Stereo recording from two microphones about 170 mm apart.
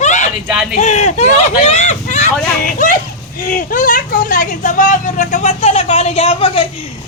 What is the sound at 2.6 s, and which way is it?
Speech, 50° left (ahead or behind).